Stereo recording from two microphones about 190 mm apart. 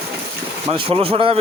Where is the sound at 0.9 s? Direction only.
30° right (ahead or behind).